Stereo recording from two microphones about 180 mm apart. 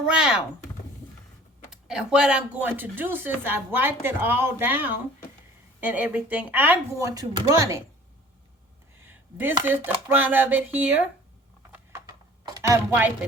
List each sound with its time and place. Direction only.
0.0 s speech: 5° right (ahead or behind)
1.7 s speech: 5° right (ahead or behind); by 7.8 s 20° right (ahead or behind)
9.0 s speech: 10° right (ahead or behind)
11.7 s typing: 15° right (ahead or behind)